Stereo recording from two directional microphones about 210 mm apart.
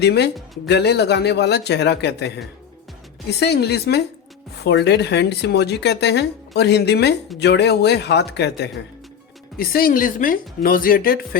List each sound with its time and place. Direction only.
0.0 s speech: 50° left (ahead or behind)
0.3 s speech: centre (ahead or behind)
0.7 s speech: 50° left (ahead or behind)